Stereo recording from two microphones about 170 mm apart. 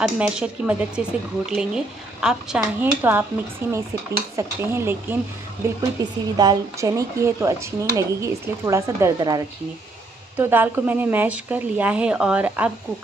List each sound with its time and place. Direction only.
0.0 s a woman's voice: 5° right (ahead or behind)
6.0 s speech: 20° right (ahead or behind)
10.3 s a woman's voice: 10° right (ahead or behind)